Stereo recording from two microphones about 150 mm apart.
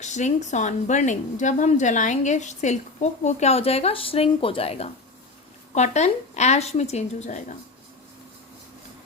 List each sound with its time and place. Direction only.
0.0 s speech: 50° left (ahead or behind)